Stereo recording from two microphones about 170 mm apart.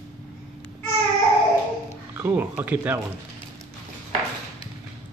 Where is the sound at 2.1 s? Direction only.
10° right (ahead or behind).